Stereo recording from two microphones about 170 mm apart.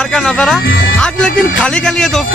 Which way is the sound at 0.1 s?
5° left (ahead or behind).